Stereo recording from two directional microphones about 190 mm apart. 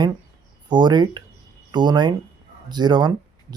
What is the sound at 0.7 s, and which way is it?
Speech, 25° right (ahead or behind).